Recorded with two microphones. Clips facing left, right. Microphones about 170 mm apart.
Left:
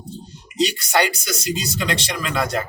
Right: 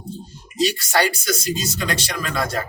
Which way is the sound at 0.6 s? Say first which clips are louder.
Even; 15° left (ahead or behind).